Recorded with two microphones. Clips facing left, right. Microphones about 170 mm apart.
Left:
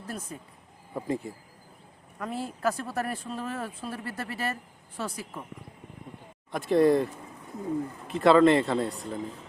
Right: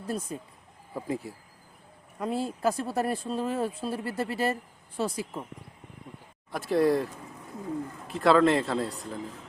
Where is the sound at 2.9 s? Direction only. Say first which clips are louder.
Right 4 dB; 30° right (ahead or behind).